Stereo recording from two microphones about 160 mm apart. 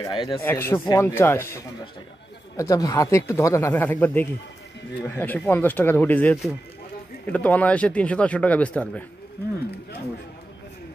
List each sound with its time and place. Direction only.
0.0 s speech: 30° left (ahead or behind)
0.4 s speech: 15° left (ahead or behind)